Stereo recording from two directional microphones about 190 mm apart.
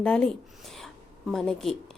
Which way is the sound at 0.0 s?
5° left (ahead or behind).